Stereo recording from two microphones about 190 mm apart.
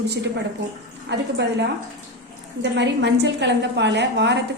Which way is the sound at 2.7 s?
65° right (ahead or behind).